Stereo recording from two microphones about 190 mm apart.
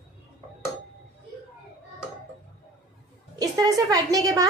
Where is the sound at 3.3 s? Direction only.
20° right (ahead or behind).